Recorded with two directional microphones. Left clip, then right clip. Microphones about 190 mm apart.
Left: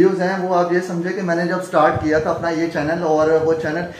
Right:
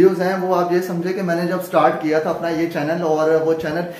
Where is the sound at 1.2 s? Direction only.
Centre (ahead or behind).